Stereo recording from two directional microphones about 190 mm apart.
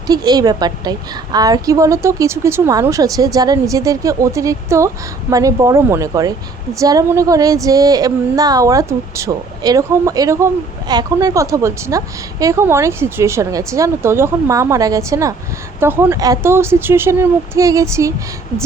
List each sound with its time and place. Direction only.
0.1 s speech: 20° right (ahead or behind)